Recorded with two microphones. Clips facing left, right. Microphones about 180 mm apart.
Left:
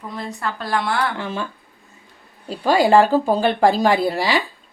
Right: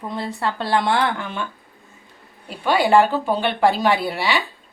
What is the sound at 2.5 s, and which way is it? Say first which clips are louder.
Speech: left 2 dB; 35° left (ahead or behind).